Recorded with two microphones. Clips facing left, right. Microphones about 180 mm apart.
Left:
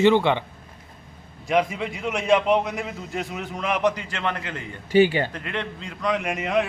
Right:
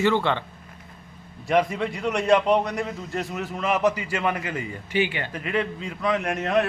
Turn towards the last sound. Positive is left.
turn(degrees=0)  # may be behind; listen again after turning